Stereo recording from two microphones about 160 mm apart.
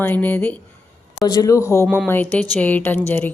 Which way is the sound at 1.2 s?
25° left (ahead or behind).